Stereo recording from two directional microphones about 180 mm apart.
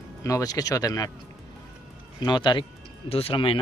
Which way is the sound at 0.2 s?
20° left (ahead or behind).